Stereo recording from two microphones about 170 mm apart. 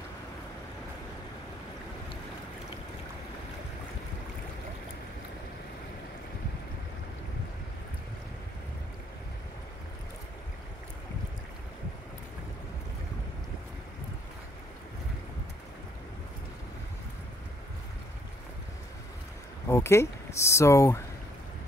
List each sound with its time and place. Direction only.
19.7 s speech: 15° left (ahead or behind)